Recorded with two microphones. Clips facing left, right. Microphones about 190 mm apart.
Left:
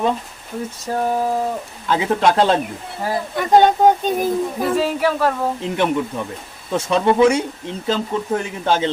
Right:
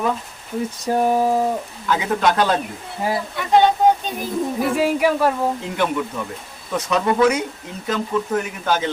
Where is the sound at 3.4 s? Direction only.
45° left (ahead or behind).